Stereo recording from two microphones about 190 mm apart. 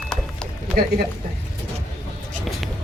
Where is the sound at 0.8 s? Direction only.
50° right (ahead or behind).